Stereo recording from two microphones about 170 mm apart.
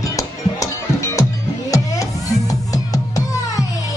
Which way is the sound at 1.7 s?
20° left (ahead or behind).